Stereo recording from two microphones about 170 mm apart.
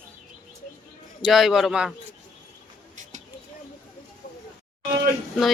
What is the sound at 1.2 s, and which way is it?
Speech, centre (ahead or behind).